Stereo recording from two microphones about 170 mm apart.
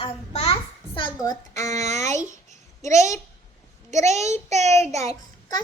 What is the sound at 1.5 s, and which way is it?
Speech, 40° right (ahead or behind).